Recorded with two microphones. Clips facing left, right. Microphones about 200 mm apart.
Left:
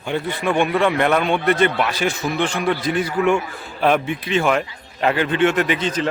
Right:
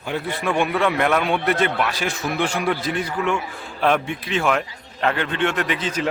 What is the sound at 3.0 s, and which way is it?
A man's voice, 10° left (ahead or behind).